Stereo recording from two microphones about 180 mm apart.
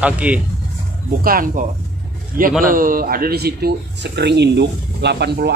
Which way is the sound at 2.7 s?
50° right (ahead or behind).